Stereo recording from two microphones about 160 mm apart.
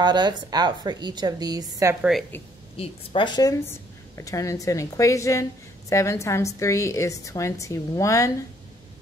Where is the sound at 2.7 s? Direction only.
35° left (ahead or behind); by 8.3 s 20° left (ahead or behind).